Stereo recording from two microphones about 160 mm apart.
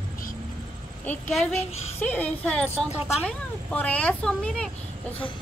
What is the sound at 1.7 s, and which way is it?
Speech, 40° left (ahead or behind).